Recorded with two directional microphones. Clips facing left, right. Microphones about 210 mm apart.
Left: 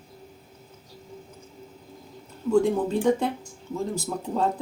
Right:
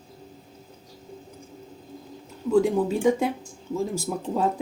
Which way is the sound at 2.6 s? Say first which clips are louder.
Right 1 dB; 5° right (ahead or behind).